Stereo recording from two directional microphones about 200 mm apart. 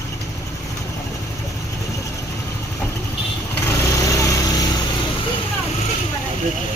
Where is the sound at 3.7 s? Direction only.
15° left (ahead or behind).